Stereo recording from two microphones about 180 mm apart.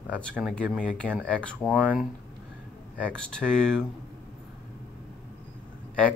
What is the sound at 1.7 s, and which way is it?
Speech, 10° right (ahead or behind).